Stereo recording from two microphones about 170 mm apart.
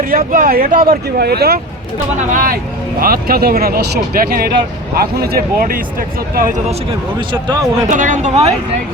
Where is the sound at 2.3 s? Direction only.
55° right (ahead or behind).